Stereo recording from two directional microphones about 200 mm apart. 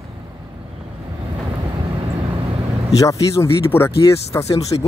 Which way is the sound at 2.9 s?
15° left (ahead or behind).